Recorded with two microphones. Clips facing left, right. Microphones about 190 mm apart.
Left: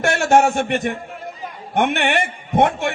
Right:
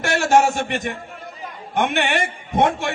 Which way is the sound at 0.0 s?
55° left (ahead or behind).